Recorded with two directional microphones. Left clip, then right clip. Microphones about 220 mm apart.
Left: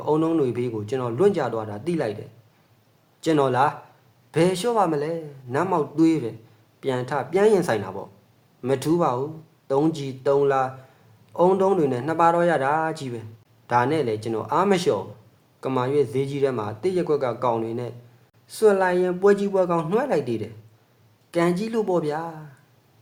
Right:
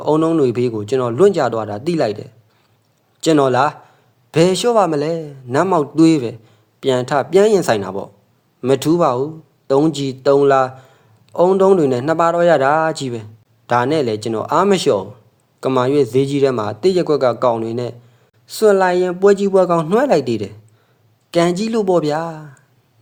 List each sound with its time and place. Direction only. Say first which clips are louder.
0.0 s a man's voice: right 7 dB; 30° right (ahead or behind)